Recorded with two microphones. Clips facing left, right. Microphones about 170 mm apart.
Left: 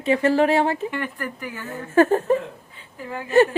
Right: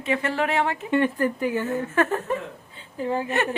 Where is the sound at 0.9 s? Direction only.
25° right (ahead or behind).